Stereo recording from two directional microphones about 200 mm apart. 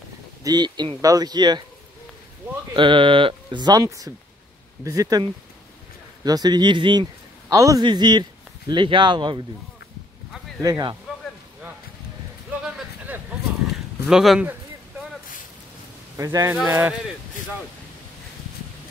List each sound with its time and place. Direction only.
0.4 s speech: 20° right (ahead or behind)
2.7 s a man's voice: 25° right (ahead or behind)
10.6 s speech: 20° right (ahead or behind)
14.0 s a sound: centre (ahead or behind)
16.2 s speech: 15° right (ahead or behind)